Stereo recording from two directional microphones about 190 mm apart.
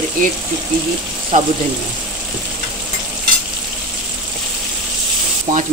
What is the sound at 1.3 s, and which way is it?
Speech, 40° right (ahead or behind).